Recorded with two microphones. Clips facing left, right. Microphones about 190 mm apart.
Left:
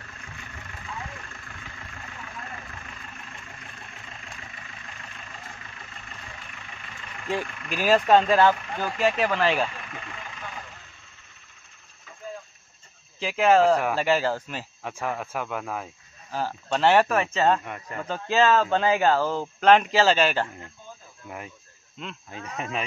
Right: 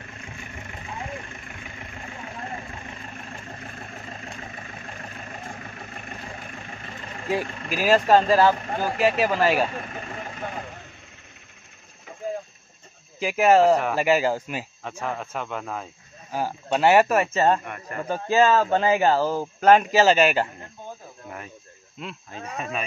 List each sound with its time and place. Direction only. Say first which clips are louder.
0.0 s vehicle: right 4 dB; 20° right (ahead or behind)
3.4 s vehicle: right 7 dB; 40° right (ahead or behind)
7.8 s speech: right 1 dB; centre (ahead or behind)
8.5 s speech: right 4 dB; 40° right (ahead or behind)
9.2 s speech: right 2 dB; 5° right (ahead or behind)
9.7 s vehicle: right 6 dB; 40° right (ahead or behind)
13.2 s speech: right 2 dB; 10° right (ahead or behind)
14.8 s speech: left 4 dB; 15° left (ahead or behind)
16.3 s speech: right 2 dB; 15° right (ahead or behind)
22.0 s speech: right 2 dB; 5° right (ahead or behind)
22.3 s speech: right 1 dB; 20° left (ahead or behind)